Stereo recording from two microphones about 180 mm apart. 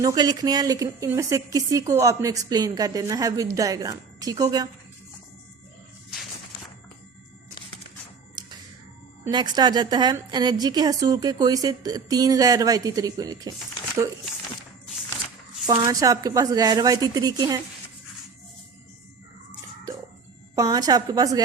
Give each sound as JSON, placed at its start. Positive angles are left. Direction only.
{"t": 0.0, "sound": "a woman's voice", "side_deg": -20}
{"t": 9.2, "sound": "a woman's voice", "side_deg": -25}
{"t": 15.6, "sound": "a woman's voice", "side_deg": -20}
{"t": 20.6, "sound": "a woman's voice", "side_deg": -20}